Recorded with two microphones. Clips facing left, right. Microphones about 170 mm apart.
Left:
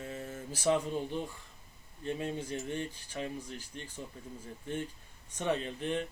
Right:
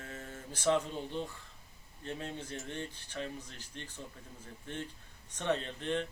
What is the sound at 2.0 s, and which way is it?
Speech, 15° left (ahead or behind).